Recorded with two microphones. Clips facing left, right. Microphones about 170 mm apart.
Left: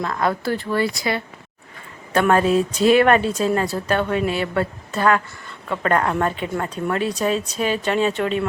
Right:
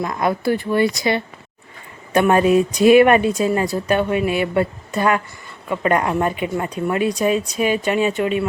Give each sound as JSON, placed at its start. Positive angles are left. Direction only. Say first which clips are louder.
{"t": 0.0, "sound": "speech", "louder": "right 2 dB", "side_deg": -15}